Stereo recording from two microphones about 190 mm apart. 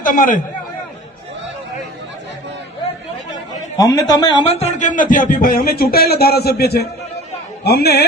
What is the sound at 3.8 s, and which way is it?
A man's voice, 20° left (ahead or behind).